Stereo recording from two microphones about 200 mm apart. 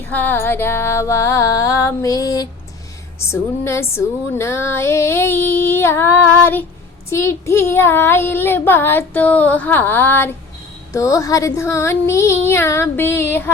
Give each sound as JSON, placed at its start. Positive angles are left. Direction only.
{"t": 0.1, "sound": "female singing", "side_deg": 10}